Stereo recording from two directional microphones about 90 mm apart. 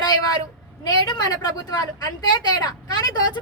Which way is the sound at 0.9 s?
50° left (ahead or behind).